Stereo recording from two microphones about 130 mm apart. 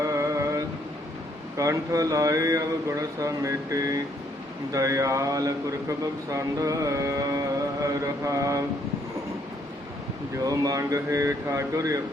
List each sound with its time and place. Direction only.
0.0 s a sound: 25° right (ahead or behind)
1.5 s music: 25° right (ahead or behind)
10.3 s music: 25° right (ahead or behind)